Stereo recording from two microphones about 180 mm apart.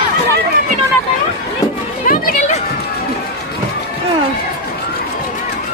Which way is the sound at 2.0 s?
50° left (ahead or behind).